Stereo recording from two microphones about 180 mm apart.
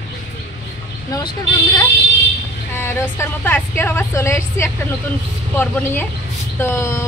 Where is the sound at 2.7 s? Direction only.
10° left (ahead or behind).